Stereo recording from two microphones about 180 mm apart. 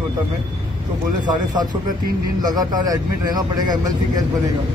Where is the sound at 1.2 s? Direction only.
20° right (ahead or behind).